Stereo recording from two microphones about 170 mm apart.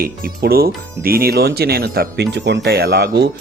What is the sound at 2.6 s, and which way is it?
Speech, 70° right (ahead or behind).